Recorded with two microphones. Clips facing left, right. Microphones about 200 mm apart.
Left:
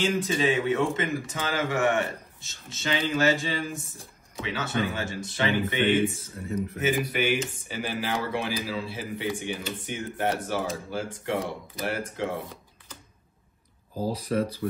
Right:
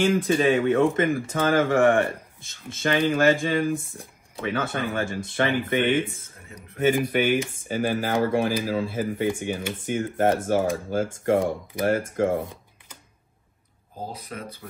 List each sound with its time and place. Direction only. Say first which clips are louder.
0.0 s a man's voice: right 5 dB; 55° right (ahead or behind)
14.1 s speech: left 10 dB; 35° left (ahead or behind)